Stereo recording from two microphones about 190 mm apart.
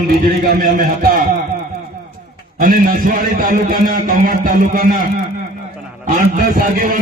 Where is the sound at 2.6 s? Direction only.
50° right (ahead or behind).